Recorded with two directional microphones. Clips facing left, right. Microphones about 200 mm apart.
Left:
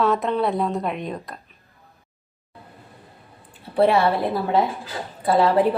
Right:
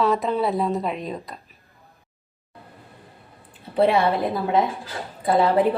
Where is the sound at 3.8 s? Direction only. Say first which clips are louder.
Left 1 dB; 20° right (ahead or behind).